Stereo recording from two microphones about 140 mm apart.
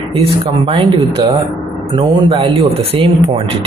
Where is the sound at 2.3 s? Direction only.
45° right (ahead or behind).